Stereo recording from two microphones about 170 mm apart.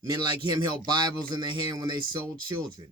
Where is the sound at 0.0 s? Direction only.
25° right (ahead or behind).